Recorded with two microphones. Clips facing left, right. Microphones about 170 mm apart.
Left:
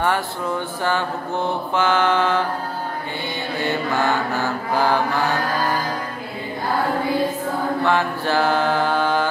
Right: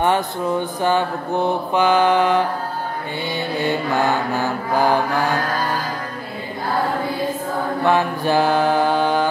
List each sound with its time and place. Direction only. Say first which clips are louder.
0.0 s mantra: right 3 dB; 20° right (ahead or behind)
3.5 s mantra: right 2 dB; 15° right (ahead or behind)
7.8 s mantra: right 4 dB; 15° right (ahead or behind)